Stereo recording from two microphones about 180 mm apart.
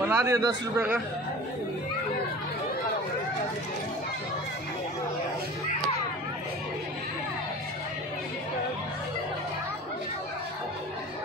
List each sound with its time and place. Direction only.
0.1 s a man's voice: 15° right (ahead or behind)